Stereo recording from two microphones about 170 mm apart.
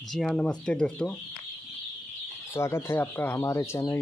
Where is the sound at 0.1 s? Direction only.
Centre (ahead or behind).